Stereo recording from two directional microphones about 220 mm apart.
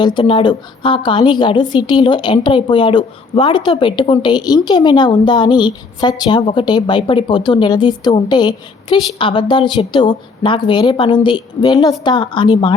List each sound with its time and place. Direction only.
0.0 s a woman's voice: 20° left (ahead or behind)